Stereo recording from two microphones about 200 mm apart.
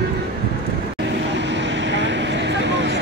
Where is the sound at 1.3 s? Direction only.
65° right (ahead or behind).